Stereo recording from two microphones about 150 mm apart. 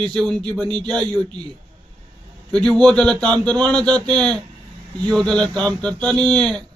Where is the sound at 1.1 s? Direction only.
30° right (ahead or behind).